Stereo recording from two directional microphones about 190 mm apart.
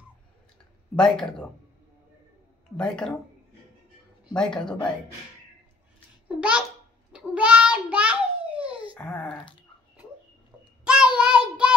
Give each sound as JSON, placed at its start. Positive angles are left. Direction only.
{"t": 0.9, "sound": "speech", "side_deg": 5}
{"t": 2.8, "sound": "speech", "side_deg": 5}
{"t": 4.3, "sound": "speech", "side_deg": 5}
{"t": 6.2, "sound": "a child's voice", "side_deg": -5}
{"t": 7.1, "sound": "child singing", "side_deg": -5}
{"t": 8.9, "sound": "a child's voice", "side_deg": 5}
{"t": 10.8, "sound": "child singing", "side_deg": -5}